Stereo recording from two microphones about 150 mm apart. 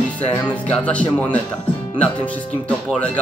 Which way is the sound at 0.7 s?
10° left (ahead or behind).